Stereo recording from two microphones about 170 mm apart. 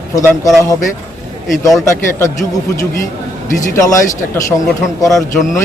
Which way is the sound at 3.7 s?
20° left (ahead or behind).